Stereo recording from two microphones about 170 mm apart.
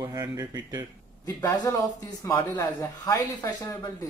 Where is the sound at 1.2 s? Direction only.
20° left (ahead or behind).